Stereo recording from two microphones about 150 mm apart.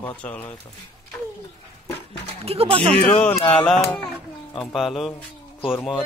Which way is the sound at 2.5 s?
40° right (ahead or behind).